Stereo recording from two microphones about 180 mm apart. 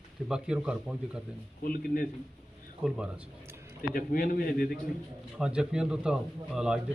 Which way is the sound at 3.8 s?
55° left (ahead or behind).